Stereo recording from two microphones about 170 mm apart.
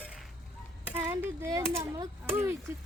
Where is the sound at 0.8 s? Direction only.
15° right (ahead or behind).